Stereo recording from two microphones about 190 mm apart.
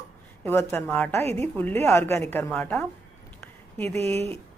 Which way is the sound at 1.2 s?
35° right (ahead or behind).